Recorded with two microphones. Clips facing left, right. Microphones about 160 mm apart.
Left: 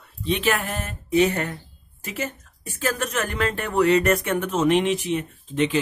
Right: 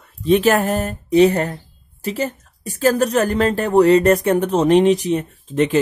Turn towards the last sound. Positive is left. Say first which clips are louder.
# right 5 dB
turn(degrees=-45)  # may be behind; listen again after turning